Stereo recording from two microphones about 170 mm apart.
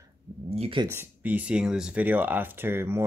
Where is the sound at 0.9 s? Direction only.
10° right (ahead or behind).